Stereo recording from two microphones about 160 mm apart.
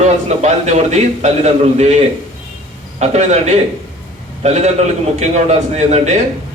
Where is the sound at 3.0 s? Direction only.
45° right (ahead or behind).